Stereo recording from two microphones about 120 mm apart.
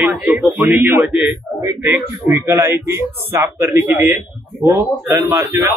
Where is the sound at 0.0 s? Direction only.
10° right (ahead or behind).